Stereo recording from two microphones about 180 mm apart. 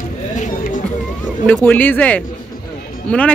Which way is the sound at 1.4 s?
10° left (ahead or behind).